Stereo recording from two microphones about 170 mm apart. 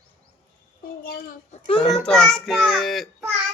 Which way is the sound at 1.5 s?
35° left (ahead or behind).